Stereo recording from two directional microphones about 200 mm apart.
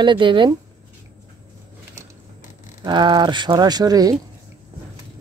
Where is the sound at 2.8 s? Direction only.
20° right (ahead or behind).